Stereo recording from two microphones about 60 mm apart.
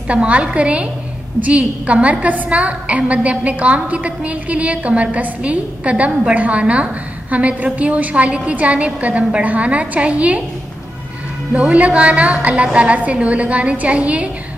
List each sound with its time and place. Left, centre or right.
0.1 s a woman's voice: centre
11.5 s a woman's voice: right